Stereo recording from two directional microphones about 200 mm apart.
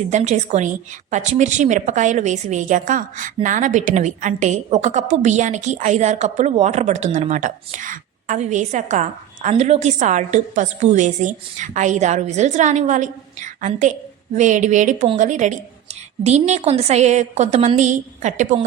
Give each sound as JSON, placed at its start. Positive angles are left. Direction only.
{"t": 0.1, "sound": "a woman's voice", "side_deg": -35}